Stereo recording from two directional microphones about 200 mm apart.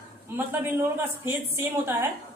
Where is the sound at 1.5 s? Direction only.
10° right (ahead or behind).